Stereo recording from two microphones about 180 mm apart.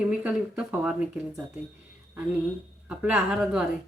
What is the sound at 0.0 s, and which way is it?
Speech, 10° right (ahead or behind).